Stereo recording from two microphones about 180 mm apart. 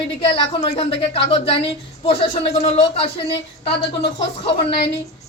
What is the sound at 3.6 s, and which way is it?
Speech, 70° left (ahead or behind).